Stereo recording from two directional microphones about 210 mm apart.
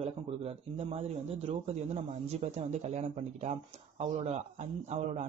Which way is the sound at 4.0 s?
30° right (ahead or behind).